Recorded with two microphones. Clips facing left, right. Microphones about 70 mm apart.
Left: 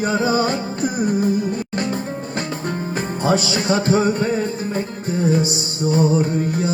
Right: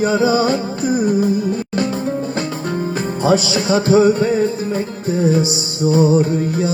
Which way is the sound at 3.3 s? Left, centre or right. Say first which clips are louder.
Right 3 dB; left.